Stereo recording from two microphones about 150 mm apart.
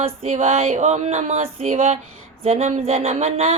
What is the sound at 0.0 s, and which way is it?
Speech, 45° right (ahead or behind).